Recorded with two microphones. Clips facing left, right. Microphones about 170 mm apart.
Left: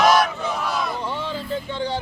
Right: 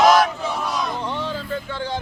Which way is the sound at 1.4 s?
15° left (ahead or behind).